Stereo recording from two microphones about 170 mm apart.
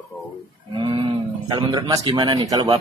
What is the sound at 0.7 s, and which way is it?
Speech, 25° right (ahead or behind).